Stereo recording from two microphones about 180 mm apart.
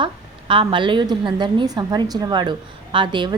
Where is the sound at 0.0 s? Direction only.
30° right (ahead or behind).